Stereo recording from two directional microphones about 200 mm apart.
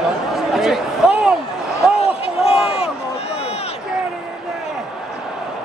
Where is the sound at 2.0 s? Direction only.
30° left (ahead or behind).